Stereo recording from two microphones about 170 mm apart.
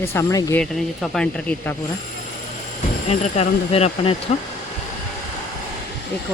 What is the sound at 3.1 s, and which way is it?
Speech, 35° left (ahead or behind).